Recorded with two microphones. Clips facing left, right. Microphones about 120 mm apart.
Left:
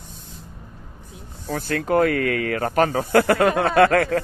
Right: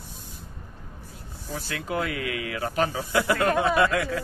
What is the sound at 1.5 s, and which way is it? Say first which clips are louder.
Speech: left 9 dB; 55° left (ahead or behind).